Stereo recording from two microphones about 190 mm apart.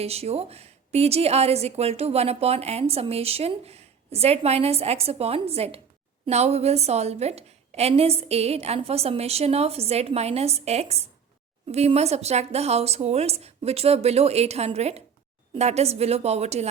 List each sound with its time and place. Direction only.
0.0 s a woman's voice: 35° right (ahead or behind)